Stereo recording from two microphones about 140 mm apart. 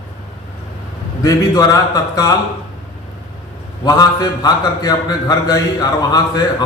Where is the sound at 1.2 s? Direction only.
25° left (ahead or behind).